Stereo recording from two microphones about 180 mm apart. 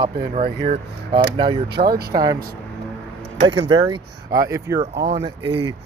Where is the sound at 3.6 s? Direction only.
25° right (ahead or behind).